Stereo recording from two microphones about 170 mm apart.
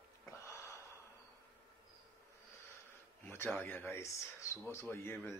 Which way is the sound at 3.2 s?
10° left (ahead or behind).